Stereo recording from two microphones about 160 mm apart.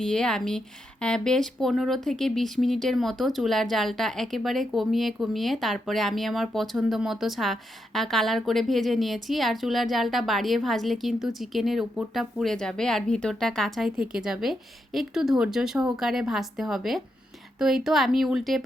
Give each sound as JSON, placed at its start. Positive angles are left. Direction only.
{"t": 0.0, "sound": "speech", "side_deg": 5}